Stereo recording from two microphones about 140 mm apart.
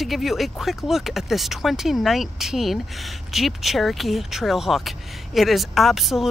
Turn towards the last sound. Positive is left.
turn(degrees=0)  # may be behind; listen again after turning